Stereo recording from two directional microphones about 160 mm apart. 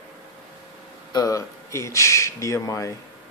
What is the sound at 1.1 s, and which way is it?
Speech, 20° left (ahead or behind).